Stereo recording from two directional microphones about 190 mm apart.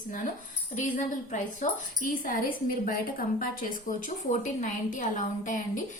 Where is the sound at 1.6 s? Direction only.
40° left (ahead or behind).